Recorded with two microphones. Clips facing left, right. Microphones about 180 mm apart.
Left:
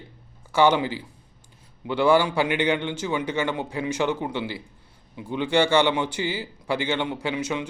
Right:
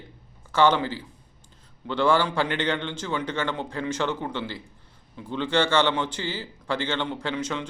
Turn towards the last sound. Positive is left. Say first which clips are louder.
# left 2 dB
turn(degrees=10)  # may be behind; listen again after turning